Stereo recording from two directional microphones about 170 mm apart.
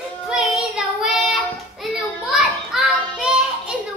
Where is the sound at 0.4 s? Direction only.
5° right (ahead or behind).